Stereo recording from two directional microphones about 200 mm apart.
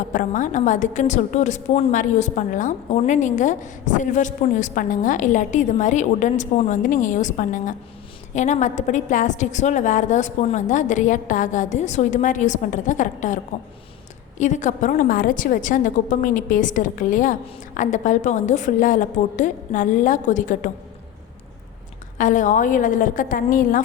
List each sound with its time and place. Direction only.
0.1 s a woman's voice: 40° left (ahead or behind)
22.2 s a woman's voice: 40° left (ahead or behind)